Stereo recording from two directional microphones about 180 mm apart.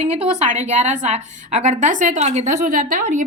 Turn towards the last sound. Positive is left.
turn(degrees=-45)  # may be behind; listen again after turning